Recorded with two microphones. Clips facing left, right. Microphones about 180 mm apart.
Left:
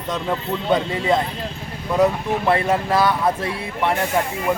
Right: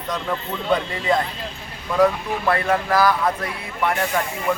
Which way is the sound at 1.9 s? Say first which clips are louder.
Left 1 dB; 20° left (ahead or behind).